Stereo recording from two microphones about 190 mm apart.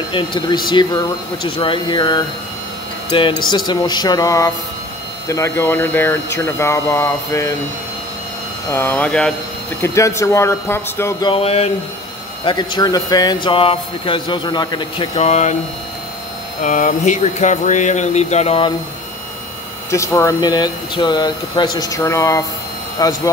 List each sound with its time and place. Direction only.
0.1 s speech: 25° left (ahead or behind)
8.6 s speech: 10° left (ahead or behind); by 15.5 s 40° left (ahead or behind)
16.6 s speech: 40° left (ahead or behind)
19.9 s speech: 15° left (ahead or behind)